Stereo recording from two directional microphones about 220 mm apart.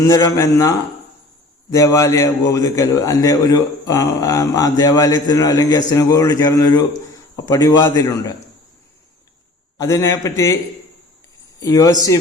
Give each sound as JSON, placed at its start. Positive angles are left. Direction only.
{"t": 0.1, "sound": "a man's voice", "side_deg": 15}
{"t": 9.7, "sound": "a man's voice", "side_deg": 15}
{"t": 11.6, "sound": "a man's voice", "side_deg": 15}